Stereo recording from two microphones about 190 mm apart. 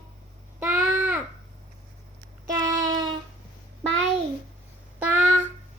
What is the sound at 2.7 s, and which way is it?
Child singing, 20° right (ahead or behind).